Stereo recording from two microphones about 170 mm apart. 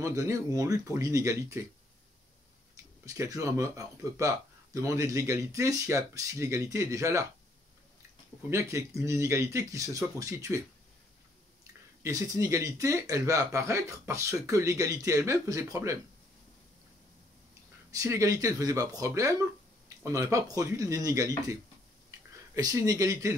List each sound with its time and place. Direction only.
0.0 s speech: 20° right (ahead or behind)
2.7 s speech: 20° right (ahead or behind)
8.5 s speech: 15° right (ahead or behind)
12.0 s speech: 20° right (ahead or behind)
17.9 s speech: 20° right (ahead or behind)
22.6 s speech: 20° right (ahead or behind)